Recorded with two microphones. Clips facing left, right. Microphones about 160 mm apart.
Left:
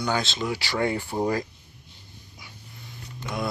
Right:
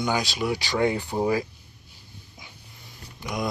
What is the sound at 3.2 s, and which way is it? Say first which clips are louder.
Speech: right 1 dB; 15° right (ahead or behind).